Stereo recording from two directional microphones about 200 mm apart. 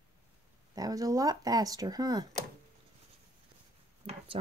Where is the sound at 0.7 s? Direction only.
20° right (ahead or behind).